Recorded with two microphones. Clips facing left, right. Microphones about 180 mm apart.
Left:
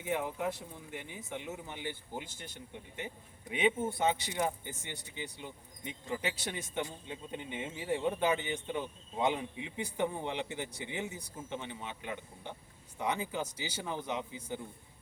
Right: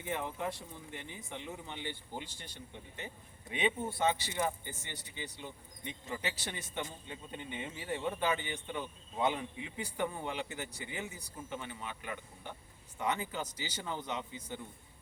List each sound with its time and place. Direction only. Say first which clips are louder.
0.0 s speech: left 3 dB; 10° left (ahead or behind)
3.5 s speech: left 3 dB; 15° left (ahead or behind)